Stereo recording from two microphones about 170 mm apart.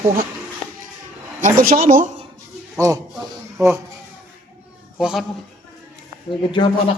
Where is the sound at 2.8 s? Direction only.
20° right (ahead or behind).